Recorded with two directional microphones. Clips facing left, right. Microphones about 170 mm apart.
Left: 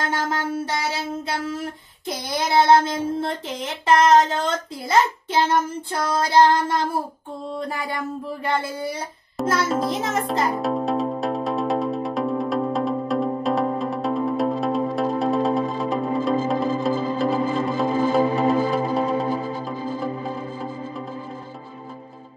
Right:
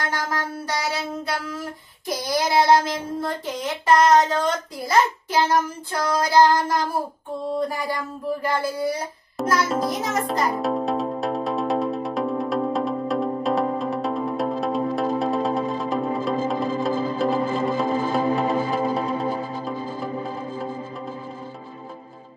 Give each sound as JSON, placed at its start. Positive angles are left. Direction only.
{"t": 0.1, "sound": "a sound", "side_deg": 25}
{"t": 2.0, "sound": "child singing", "side_deg": 25}
{"t": 9.6, "sound": "music", "side_deg": 0}